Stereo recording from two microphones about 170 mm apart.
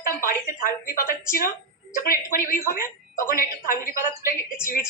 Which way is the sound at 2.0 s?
55° left (ahead or behind).